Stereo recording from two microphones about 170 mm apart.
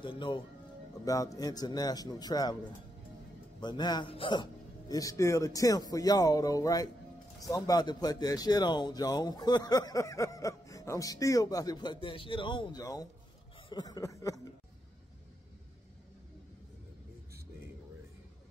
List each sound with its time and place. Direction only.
1.0 s speech: 20° left (ahead or behind)
3.6 s speech: 25° left (ahead or behind)
13.7 s a sound: 25° left (ahead or behind)